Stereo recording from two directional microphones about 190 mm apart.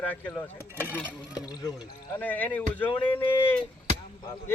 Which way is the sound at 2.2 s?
10° left (ahead or behind).